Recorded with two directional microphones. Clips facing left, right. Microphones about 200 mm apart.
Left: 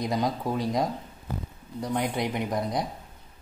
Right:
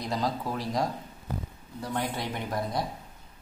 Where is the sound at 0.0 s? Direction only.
20° left (ahead or behind).